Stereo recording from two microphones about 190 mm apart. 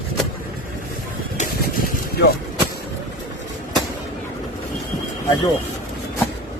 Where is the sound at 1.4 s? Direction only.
50° left (ahead or behind).